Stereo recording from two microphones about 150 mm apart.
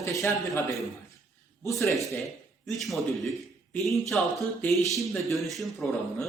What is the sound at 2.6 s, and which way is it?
Speech, centre (ahead or behind).